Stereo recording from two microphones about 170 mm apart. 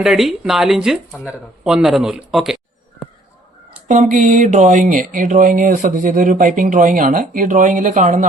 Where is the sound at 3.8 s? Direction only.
50° right (ahead or behind).